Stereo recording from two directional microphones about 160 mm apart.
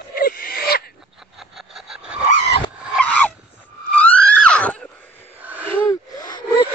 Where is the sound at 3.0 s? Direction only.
10° left (ahead or behind).